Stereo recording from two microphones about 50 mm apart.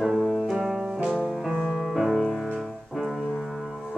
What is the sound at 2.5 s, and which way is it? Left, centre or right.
Piano, centre.